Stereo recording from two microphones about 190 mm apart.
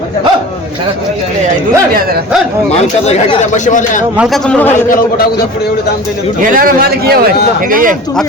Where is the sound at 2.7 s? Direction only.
35° left (ahead or behind).